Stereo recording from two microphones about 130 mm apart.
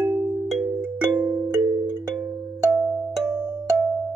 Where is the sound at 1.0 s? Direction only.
10° right (ahead or behind).